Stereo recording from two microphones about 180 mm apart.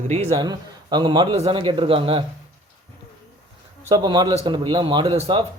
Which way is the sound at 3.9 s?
25° right (ahead or behind).